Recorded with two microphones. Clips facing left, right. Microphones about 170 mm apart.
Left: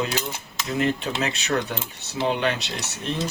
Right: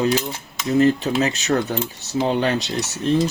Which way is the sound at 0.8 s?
35° right (ahead or behind).